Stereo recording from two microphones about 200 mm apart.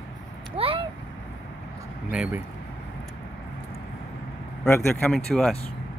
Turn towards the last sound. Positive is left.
turn(degrees=0)  # may be behind; listen again after turning